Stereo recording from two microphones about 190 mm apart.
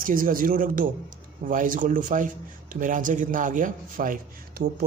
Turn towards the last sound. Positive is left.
turn(degrees=-45)  # may be behind; listen again after turning